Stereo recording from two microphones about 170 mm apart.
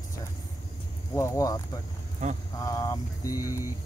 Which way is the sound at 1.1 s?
15° left (ahead or behind).